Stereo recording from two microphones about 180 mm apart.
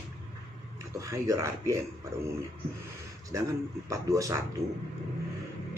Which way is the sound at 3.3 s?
15° right (ahead or behind).